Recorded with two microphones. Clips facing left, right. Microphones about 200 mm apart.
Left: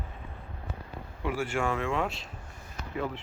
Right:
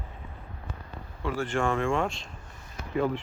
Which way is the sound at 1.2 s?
10° left (ahead or behind).